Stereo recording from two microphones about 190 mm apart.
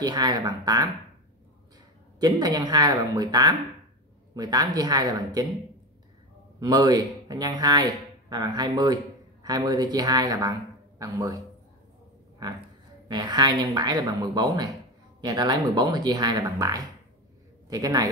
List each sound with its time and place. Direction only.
0.0 s speech: 20° right (ahead or behind)
2.1 s speech: 20° right (ahead or behind)
6.6 s speech: 20° right (ahead or behind)
13.1 s a man's voice: 20° right (ahead or behind)